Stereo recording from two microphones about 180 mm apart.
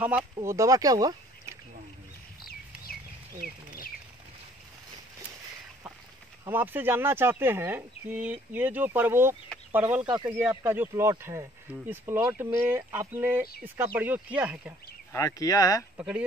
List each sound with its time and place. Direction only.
0.0 s speech: 10° right (ahead or behind)
3.3 s a sound: 50° right (ahead or behind)
6.4 s speech: 10° right (ahead or behind)
10.0 s speech: 25° right (ahead or behind); by 14.7 s 5° right (ahead or behind)
15.1 s speech: 20° left (ahead or behind)
16.0 s speech: 5° right (ahead or behind)